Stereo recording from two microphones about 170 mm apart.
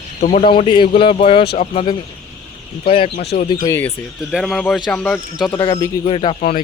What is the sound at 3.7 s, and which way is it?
Speech, 15° left (ahead or behind).